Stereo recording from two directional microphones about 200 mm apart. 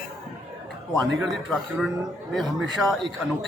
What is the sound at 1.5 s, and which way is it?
A man's voice, 5° right (ahead or behind).